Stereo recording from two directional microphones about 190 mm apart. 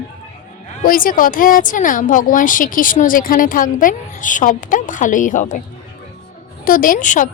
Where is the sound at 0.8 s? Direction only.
50° left (ahead or behind).